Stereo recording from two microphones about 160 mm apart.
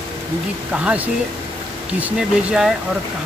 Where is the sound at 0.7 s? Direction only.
10° right (ahead or behind).